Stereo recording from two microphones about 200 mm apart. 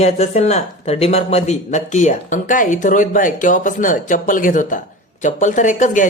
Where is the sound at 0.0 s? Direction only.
35° left (ahead or behind).